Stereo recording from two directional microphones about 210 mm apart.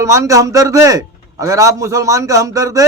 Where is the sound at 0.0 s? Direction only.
15° right (ahead or behind).